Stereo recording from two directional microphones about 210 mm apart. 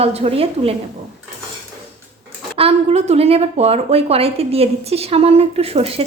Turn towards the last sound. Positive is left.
turn(degrees=-30)  # may be behind; listen again after turning